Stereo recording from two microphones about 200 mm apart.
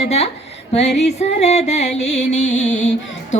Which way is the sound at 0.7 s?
35° left (ahead or behind).